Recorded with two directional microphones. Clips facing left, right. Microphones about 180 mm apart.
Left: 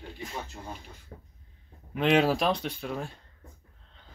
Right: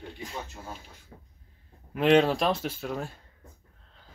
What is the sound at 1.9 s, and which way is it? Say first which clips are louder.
Speech: right 2 dB; centre (ahead or behind).